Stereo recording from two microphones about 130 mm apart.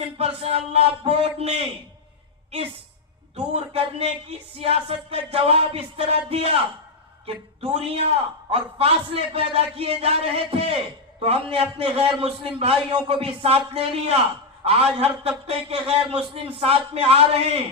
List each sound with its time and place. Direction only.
0.0 s a man's voice: 50° right (ahead or behind)
3.5 s a man's voice: 50° right (ahead or behind)